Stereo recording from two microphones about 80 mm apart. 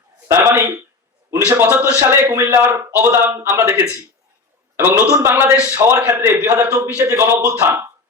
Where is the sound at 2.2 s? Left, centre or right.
Right.